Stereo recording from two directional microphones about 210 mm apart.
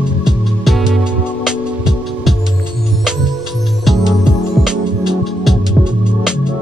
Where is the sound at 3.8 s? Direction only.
Centre (ahead or behind).